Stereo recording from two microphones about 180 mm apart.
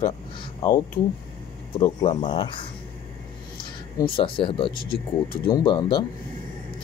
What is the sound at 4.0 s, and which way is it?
Speech, 30° left (ahead or behind).